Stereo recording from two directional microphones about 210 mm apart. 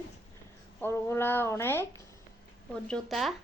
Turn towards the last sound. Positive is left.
turn(degrees=0)  # may be behind; listen again after turning